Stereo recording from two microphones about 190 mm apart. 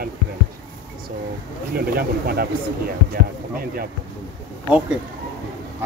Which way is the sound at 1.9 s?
55° right (ahead or behind).